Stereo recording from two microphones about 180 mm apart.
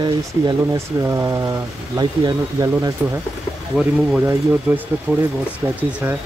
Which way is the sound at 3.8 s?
10° right (ahead or behind).